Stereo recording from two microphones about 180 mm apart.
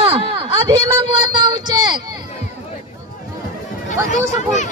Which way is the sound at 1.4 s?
25° right (ahead or behind).